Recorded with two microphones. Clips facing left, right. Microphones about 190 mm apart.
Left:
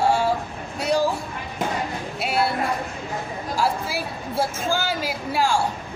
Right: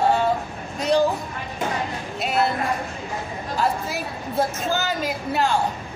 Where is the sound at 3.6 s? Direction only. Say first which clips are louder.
Even; 10° left (ahead or behind).